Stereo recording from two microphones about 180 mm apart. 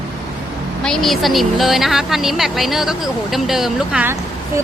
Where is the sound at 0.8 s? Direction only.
5° left (ahead or behind).